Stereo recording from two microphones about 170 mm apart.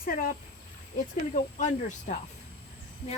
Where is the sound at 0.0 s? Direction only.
60° left (ahead or behind).